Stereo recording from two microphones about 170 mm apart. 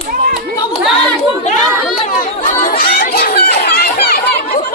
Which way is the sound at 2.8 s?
65° left (ahead or behind).